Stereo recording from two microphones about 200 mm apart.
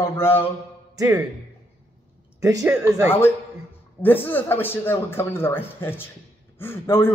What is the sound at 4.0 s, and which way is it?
Speech, 10° left (ahead or behind).